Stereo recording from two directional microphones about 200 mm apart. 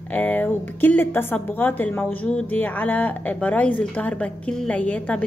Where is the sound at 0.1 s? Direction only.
10° left (ahead or behind).